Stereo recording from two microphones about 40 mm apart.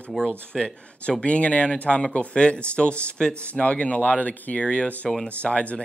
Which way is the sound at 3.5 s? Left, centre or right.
Left.